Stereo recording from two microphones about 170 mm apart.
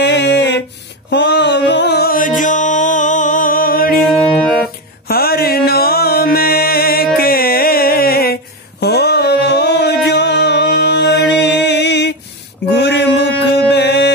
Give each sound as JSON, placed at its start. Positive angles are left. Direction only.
{"t": 0.0, "sound": "a sound", "side_deg": 90}
{"t": 1.1, "sound": "music", "side_deg": 90}
{"t": 5.0, "sound": "mantra", "side_deg": 65}
{"t": 7.2, "sound": "music", "side_deg": 60}